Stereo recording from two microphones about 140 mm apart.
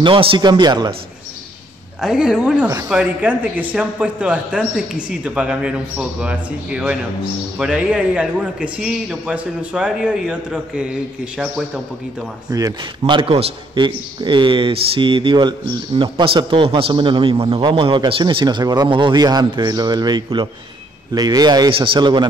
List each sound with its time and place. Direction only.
0.0 s a man's voice: 40° right (ahead or behind)
2.0 s a woman's voice: 5° right (ahead or behind)
12.4 s speech: 25° right (ahead or behind)
13.0 s a man's voice: 40° right (ahead or behind)